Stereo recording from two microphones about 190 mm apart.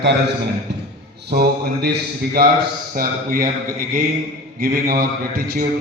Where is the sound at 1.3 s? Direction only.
55° right (ahead or behind).